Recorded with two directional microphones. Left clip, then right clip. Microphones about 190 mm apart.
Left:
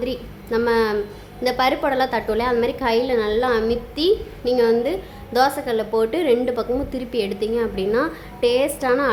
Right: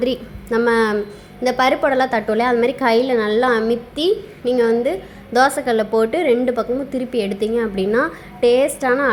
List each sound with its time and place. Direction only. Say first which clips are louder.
0.0 s a woman's voice: right 6 dB; 20° right (ahead or behind)